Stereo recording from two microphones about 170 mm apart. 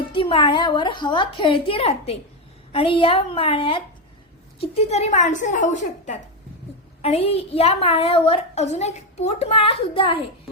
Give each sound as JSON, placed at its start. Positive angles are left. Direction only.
{"t": 0.1, "sound": "a woman's voice", "side_deg": 30}